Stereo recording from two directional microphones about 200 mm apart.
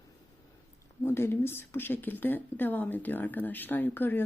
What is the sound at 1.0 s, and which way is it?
Speech, 10° left (ahead or behind).